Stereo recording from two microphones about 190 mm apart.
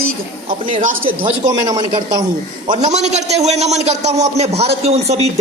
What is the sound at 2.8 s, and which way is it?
Speech, 35° right (ahead or behind).